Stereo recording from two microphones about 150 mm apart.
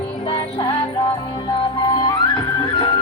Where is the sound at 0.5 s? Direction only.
30° left (ahead or behind).